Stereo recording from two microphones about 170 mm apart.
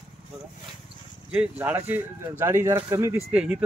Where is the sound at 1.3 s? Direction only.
10° right (ahead or behind).